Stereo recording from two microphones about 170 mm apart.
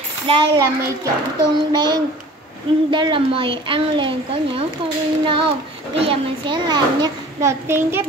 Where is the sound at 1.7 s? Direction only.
25° right (ahead or behind).